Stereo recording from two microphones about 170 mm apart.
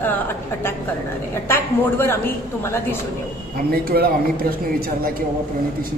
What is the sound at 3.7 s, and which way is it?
Speech, 65° right (ahead or behind).